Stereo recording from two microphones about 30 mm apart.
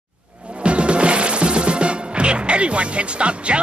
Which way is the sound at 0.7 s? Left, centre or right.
Right.